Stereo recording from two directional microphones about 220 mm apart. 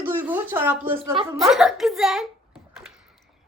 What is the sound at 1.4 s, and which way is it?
A child's voice, centre (ahead or behind).